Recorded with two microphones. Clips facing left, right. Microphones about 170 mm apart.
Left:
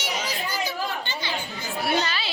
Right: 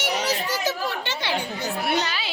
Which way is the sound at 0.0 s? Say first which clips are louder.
Right 5 dB; 75° right (ahead or behind).